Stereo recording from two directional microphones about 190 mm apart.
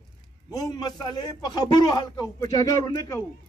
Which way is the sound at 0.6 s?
20° left (ahead or behind).